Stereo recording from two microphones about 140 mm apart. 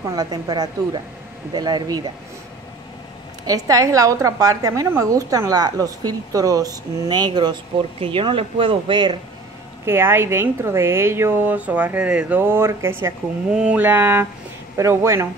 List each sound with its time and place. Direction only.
0.0 s a woman's voice: 25° right (ahead or behind)
3.4 s a woman's voice: 25° right (ahead or behind)
9.8 s a woman's voice: 15° right (ahead or behind)